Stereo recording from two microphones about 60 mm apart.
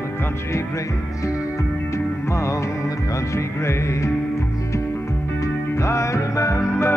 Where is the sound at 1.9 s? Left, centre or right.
Left.